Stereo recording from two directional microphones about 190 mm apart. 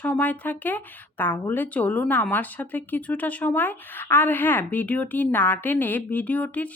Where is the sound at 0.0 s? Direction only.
10° left (ahead or behind).